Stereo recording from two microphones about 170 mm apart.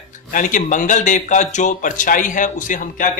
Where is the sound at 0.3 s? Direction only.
50° left (ahead or behind).